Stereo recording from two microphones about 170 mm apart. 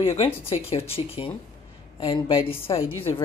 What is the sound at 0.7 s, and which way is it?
A woman's voice, 35° left (ahead or behind).